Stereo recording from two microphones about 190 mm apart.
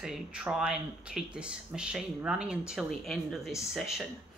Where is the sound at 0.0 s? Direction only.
5° right (ahead or behind).